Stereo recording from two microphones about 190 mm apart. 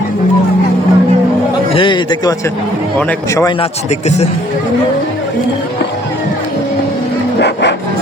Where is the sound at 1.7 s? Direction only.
25° left (ahead or behind).